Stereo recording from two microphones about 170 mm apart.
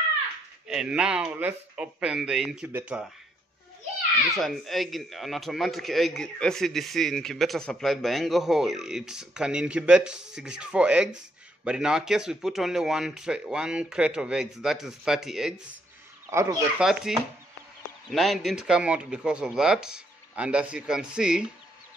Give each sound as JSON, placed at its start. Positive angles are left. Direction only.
{"t": 0.7, "sound": "a man's voice", "side_deg": -5}
{"t": 4.4, "sound": "a man's voice", "side_deg": 0}
{"t": 16.3, "sound": "speech", "side_deg": -15}
{"t": 16.8, "sound": "a man's voice", "side_deg": -5}